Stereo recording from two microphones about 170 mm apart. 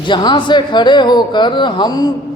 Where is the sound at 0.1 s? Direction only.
25° left (ahead or behind).